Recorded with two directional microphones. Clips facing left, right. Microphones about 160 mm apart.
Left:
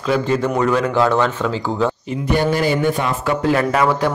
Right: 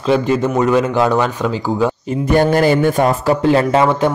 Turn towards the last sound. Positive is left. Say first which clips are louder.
# right 3 dB
turn(degrees=-25)  # may be behind; listen again after turning